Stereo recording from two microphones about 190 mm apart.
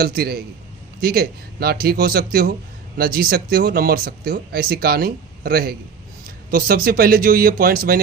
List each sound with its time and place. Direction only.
0.0 s speech: 55° right (ahead or behind)